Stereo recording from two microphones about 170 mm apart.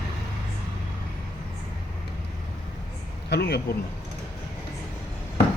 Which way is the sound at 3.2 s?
75° left (ahead or behind).